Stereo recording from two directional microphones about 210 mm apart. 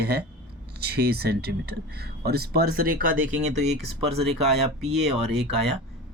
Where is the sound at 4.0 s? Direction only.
30° right (ahead or behind).